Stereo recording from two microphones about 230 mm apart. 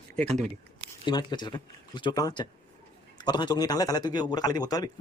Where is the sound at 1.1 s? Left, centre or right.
Centre.